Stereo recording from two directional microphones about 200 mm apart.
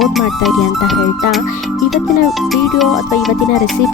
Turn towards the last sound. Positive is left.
turn(degrees=0)  # may be behind; listen again after turning